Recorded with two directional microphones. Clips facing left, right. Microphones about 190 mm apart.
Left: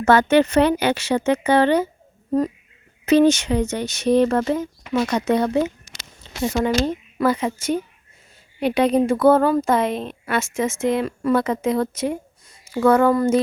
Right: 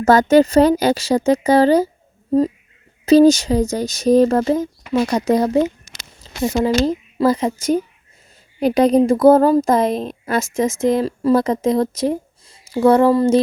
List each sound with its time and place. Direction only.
0.0 s a woman's voice: 40° right (ahead or behind)
3.1 s a woman's voice: 35° right (ahead or behind)
6.5 s speech: 15° right (ahead or behind)
6.8 s a woman's voice: 35° right (ahead or behind)